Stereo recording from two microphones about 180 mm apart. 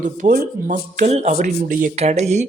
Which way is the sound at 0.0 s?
50° right (ahead or behind).